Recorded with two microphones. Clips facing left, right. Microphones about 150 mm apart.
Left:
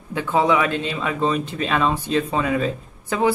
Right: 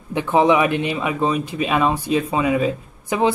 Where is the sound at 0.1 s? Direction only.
20° right (ahead or behind).